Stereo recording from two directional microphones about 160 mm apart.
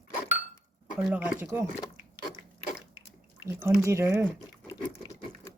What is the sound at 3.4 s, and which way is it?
Speech, 15° right (ahead or behind).